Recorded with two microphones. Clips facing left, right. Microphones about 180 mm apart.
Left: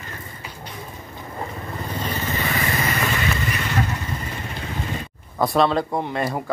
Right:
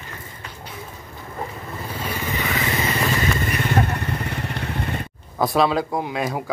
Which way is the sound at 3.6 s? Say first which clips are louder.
Right 3 dB; 55° right (ahead or behind).